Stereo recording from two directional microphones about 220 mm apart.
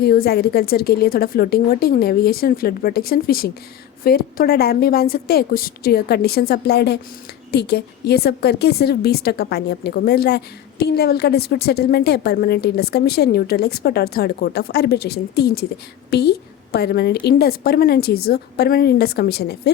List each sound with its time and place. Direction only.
0.0 s a woman's voice: 45° left (ahead or behind)